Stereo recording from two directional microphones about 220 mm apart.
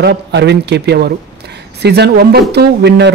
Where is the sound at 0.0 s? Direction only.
50° right (ahead or behind).